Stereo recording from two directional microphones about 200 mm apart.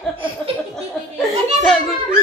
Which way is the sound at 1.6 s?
Centre (ahead or behind).